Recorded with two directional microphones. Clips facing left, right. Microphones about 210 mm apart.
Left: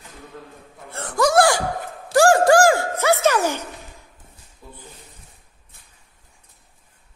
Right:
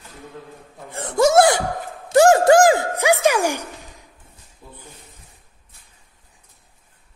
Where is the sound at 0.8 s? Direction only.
20° right (ahead or behind).